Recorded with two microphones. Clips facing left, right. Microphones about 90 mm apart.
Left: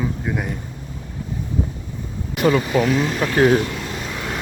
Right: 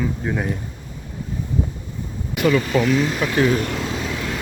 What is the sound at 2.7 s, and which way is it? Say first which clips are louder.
Speech: even; 10° left (ahead or behind).